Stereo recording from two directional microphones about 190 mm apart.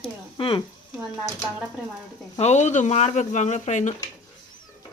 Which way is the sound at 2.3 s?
35° left (ahead or behind).